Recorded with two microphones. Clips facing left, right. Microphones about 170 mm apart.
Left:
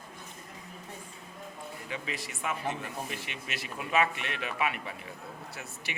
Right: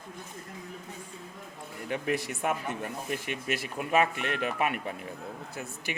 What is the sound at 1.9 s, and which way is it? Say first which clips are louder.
Speech: right 10 dB; 60° right (ahead or behind).